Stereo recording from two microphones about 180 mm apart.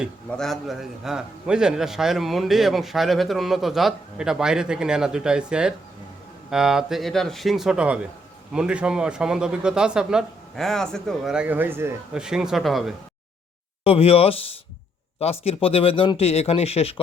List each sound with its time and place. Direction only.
0.3 s a man's voice: 5° left (ahead or behind)
13.8 s speech: 35° left (ahead or behind)